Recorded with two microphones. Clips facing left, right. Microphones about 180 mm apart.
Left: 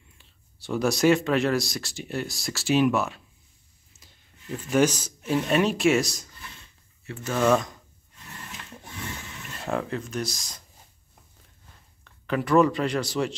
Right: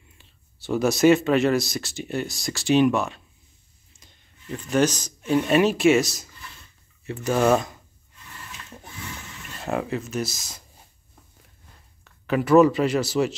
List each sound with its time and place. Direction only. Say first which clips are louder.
0.2 s speech: right 2 dB; centre (ahead or behind)
7.3 s speech: right 2 dB; 30° right (ahead or behind)
9.6 s speech: right 2 dB; 5° right (ahead or behind)
12.0 s speech: right 3 dB; 5° right (ahead or behind)